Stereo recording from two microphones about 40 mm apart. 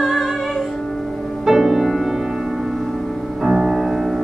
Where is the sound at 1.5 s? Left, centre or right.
Centre.